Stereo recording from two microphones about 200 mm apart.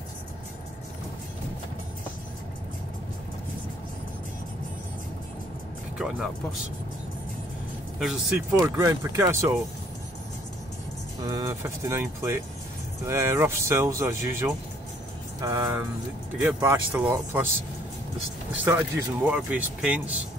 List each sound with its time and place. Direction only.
5.9 s speech: 5° right (ahead or behind)
8.0 s speech: centre (ahead or behind)
8.7 s speech: 15° right (ahead or behind)
11.2 s speech: 15° right (ahead or behind)
18.6 s speech: 10° right (ahead or behind)